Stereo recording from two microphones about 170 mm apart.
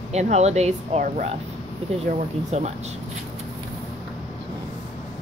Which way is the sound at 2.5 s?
40° right (ahead or behind).